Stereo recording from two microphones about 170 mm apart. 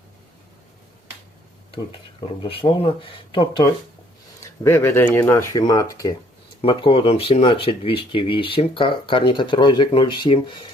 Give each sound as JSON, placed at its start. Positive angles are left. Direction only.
{"t": 2.2, "sound": "speech", "side_deg": 30}
{"t": 4.6, "sound": "speech", "side_deg": 15}
{"t": 6.6, "sound": "speech", "side_deg": 30}